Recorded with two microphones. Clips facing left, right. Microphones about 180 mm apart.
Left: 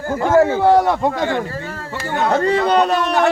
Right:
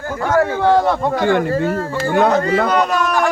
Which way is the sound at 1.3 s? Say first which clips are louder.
Right 7 dB; 55° right (ahead or behind).